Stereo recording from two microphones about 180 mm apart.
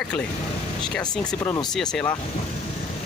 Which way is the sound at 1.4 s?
20° left (ahead or behind).